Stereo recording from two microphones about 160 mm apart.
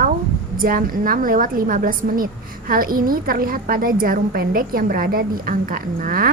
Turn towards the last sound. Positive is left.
turn(degrees=-65)  # may be behind; listen again after turning